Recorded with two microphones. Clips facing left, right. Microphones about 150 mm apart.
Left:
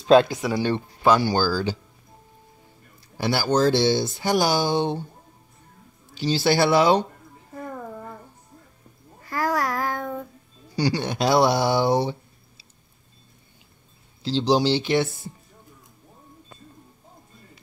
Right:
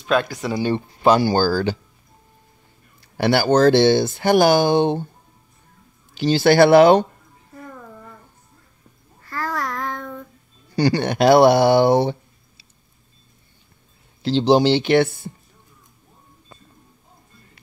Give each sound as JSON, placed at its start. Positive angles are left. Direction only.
{"t": 0.0, "sound": "speech", "side_deg": 25}
{"t": 1.2, "sound": "speech", "side_deg": -45}
{"t": 3.2, "sound": "speech", "side_deg": -65}
{"t": 6.1, "sound": "speech", "side_deg": -55}
{"t": 7.5, "sound": "music", "side_deg": 40}
{"t": 9.3, "sound": "child singing", "side_deg": 10}
{"t": 10.8, "sound": "speech", "side_deg": -60}
{"t": 14.2, "sound": "speech", "side_deg": -60}